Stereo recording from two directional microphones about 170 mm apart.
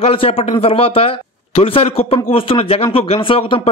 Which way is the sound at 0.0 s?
35° left (ahead or behind).